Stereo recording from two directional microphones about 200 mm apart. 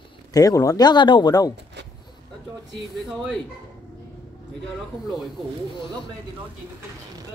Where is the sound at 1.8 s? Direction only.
60° right (ahead or behind).